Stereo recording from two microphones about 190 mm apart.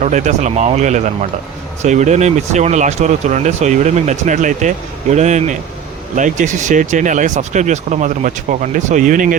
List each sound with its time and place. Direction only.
0.0 s speech: 40° right (ahead or behind)